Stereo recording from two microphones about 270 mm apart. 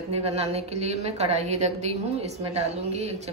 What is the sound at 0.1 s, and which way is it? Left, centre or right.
A woman's voice, right.